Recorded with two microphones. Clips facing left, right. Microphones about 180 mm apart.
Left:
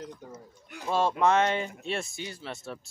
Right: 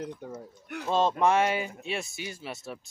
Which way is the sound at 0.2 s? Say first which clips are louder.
Right 5 dB; 65° right (ahead or behind).